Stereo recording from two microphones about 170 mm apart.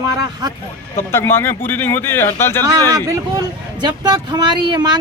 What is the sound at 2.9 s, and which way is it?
Speech, 20° right (ahead or behind).